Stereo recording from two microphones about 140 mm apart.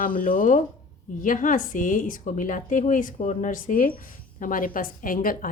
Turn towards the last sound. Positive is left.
turn(degrees=80)